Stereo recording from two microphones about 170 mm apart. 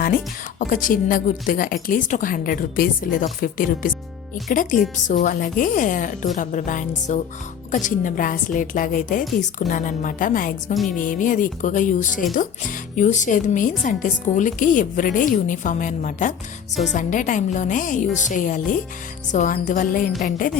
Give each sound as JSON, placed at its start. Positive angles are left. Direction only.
{"t": 0.6, "sound": "a woman's voice", "side_deg": 55}